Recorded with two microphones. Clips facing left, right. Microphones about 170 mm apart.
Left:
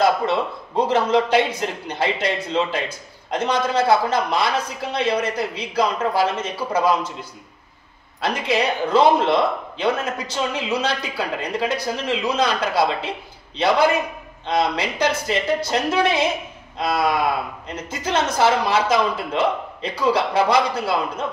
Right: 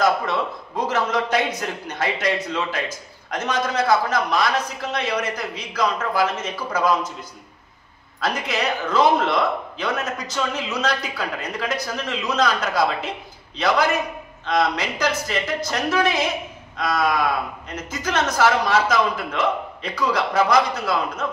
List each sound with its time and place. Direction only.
0.0 s a man's voice: 30° left (ahead or behind)
8.2 s a man's voice: 30° left (ahead or behind)